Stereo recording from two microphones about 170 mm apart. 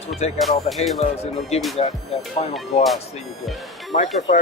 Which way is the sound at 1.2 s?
35° left (ahead or behind).